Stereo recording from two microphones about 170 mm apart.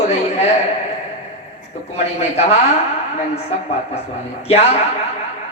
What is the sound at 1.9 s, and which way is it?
A man's voice, 40° left (ahead or behind).